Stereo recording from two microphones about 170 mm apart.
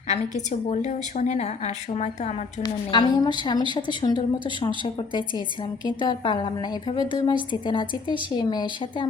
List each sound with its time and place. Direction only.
0.1 s a woman's voice: 45° left (ahead or behind)
2.6 s a woman's voice: 25° left (ahead or behind)